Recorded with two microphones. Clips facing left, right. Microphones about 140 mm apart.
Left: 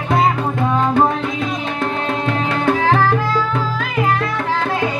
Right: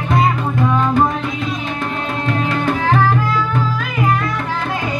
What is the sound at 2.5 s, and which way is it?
Music, 75° left (ahead or behind).